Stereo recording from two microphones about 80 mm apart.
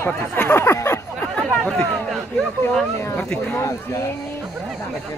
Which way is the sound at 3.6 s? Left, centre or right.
Left.